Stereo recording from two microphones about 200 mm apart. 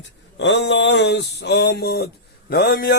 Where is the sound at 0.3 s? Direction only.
65° left (ahead or behind).